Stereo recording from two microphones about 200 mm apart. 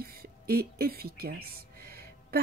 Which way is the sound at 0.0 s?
50° right (ahead or behind).